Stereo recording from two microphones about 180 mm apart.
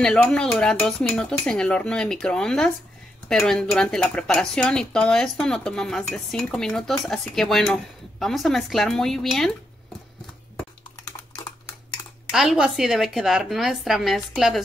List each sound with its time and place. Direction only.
0.0 s speech: 5° left (ahead or behind)
11.1 s typing: 20° left (ahead or behind)
12.3 s speech: 5° right (ahead or behind)